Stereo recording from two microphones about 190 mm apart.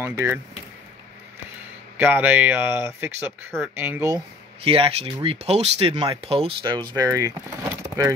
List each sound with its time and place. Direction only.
0.0 s speech: 10° right (ahead or behind)
2.0 s speech: 10° right (ahead or behind)
4.6 s speech: 30° right (ahead or behind)